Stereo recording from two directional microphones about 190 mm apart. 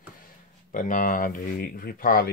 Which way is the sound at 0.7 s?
45° left (ahead or behind).